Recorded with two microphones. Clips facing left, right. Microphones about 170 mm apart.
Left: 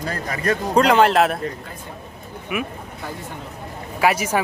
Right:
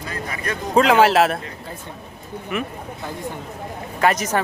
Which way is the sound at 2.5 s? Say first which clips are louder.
Even; 10° left (ahead or behind).